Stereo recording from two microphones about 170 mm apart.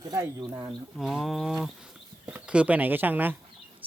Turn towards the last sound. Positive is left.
turn(degrees=-10)  # may be behind; listen again after turning